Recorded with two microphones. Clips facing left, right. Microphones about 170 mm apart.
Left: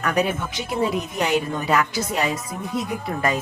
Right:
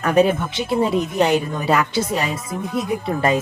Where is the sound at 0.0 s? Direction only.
30° right (ahead or behind).